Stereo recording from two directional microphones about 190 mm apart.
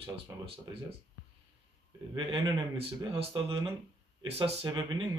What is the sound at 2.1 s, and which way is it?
Speech, 25° right (ahead or behind).